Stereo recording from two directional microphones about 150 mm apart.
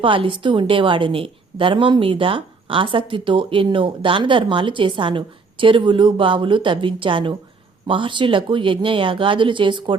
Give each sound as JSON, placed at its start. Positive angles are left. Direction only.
{"t": 0.0, "sound": "a woman's voice", "side_deg": -35}